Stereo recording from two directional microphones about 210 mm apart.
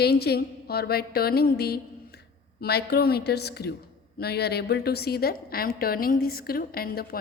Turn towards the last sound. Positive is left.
turn(degrees=45)  # may be behind; listen again after turning